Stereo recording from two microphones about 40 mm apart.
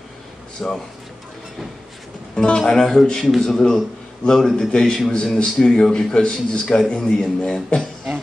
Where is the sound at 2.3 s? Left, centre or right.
Left.